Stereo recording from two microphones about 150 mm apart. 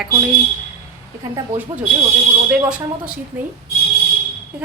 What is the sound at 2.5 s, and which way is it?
Speech, 5° right (ahead or behind).